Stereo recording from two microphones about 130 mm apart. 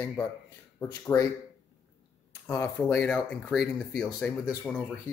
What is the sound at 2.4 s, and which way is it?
Speech, 15° left (ahead or behind).